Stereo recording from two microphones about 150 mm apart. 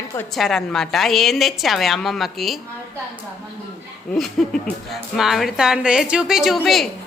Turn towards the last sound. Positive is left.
turn(degrees=0)  # may be behind; listen again after turning